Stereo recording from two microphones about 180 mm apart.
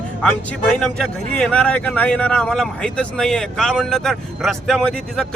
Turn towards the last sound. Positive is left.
turn(degrees=5)  # may be behind; listen again after turning